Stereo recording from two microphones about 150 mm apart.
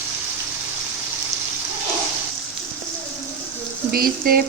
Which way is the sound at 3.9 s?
80° right.